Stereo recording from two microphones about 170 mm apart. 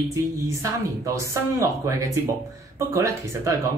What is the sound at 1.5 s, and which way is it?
Speech, 15° right (ahead or behind).